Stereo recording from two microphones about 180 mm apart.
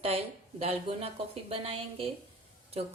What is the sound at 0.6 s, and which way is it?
A woman's voice, 35° right (ahead or behind).